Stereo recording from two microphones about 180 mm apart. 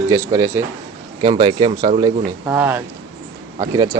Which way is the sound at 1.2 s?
30° right (ahead or behind).